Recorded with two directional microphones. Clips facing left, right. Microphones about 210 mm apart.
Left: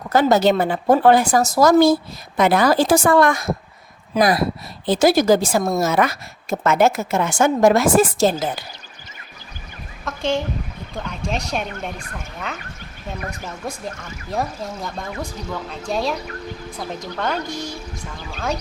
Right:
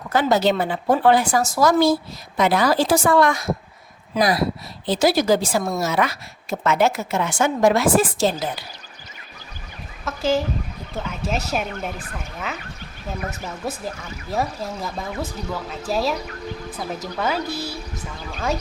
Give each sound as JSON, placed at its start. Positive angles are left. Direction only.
{"t": 0.1, "sound": "a woman's voice", "side_deg": 45}
{"t": 10.0, "sound": "speech", "side_deg": -5}